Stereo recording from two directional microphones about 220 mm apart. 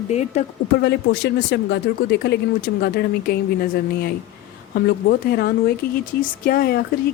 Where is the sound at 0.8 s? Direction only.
50° left (ahead or behind).